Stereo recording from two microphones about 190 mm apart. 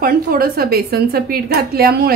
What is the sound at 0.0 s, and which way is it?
A woman's voice, 50° right (ahead or behind).